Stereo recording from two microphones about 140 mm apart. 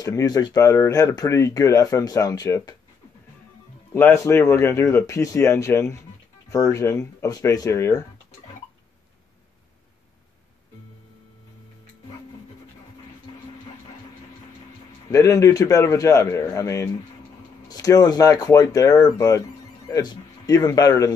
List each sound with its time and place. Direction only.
0.0 s speech: 25° left (ahead or behind)
3.9 s speech: 20° left (ahead or behind)
15.0 s speech: 25° left (ahead or behind)